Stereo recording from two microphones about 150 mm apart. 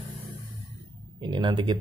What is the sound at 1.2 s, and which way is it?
Mantra, 30° right (ahead or behind).